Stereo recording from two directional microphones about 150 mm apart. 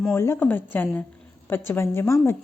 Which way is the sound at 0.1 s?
15° left (ahead or behind).